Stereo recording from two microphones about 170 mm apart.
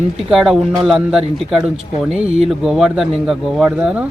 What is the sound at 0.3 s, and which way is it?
Speech, centre (ahead or behind).